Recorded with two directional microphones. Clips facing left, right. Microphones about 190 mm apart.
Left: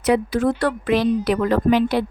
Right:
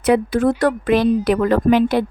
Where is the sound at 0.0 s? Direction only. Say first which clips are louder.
Right 3 dB; 55° right (ahead or behind).